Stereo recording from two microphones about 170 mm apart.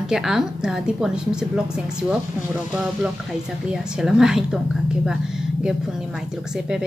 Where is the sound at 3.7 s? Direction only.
5° right (ahead or behind).